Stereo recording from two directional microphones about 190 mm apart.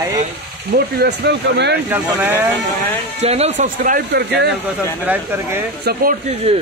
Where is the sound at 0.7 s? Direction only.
60° right (ahead or behind).